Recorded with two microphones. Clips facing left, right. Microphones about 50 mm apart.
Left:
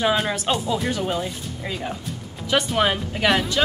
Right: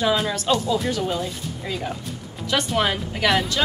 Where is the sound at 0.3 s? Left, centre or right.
Left.